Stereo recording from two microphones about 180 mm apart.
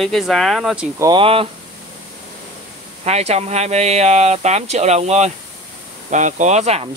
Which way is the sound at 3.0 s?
35° right (ahead or behind).